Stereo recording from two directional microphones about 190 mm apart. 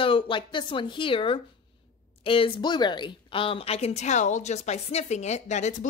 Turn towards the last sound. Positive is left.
turn(degrees=40)  # may be behind; listen again after turning